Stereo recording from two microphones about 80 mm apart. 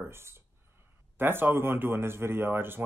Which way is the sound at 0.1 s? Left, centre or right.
Right.